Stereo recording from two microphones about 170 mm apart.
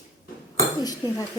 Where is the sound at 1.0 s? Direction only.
20° left (ahead or behind).